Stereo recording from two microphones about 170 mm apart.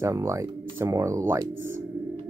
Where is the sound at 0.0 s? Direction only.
15° right (ahead or behind).